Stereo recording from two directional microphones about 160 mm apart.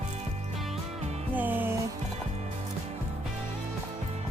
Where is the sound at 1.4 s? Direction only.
10° right (ahead or behind).